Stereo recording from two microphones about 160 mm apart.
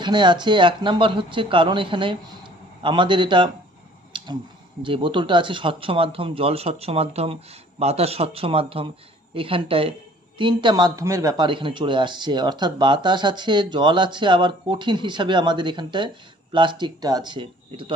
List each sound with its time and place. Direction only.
0.0 s speech: 30° right (ahead or behind)
4.1 s a sound: 30° right (ahead or behind)
4.8 s speech: 30° right (ahead or behind)